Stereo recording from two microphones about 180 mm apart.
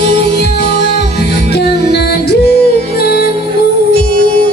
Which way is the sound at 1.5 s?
65° left (ahead or behind).